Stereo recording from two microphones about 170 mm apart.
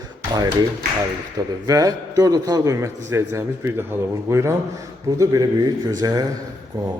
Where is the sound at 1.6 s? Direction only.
20° right (ahead or behind).